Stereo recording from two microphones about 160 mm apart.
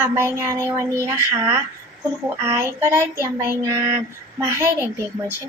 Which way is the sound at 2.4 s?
15° right (ahead or behind).